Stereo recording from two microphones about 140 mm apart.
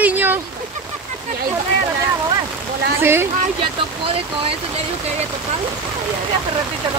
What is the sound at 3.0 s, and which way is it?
Speech, 15° right (ahead or behind).